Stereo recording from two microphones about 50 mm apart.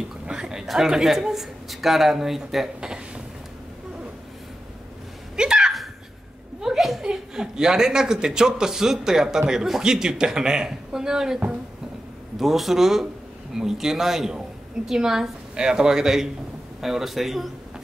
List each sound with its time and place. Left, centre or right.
0.3 s speech: centre
5.3 s sneeze: centre
6.6 s a sound: centre
7.1 s a man's voice: centre
12.4 s a man's voice: centre